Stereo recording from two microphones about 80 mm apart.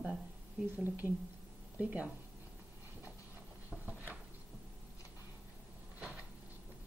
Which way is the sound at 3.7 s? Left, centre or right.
Right.